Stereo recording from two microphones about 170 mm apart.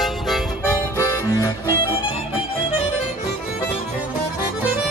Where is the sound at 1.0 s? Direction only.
15° left (ahead or behind).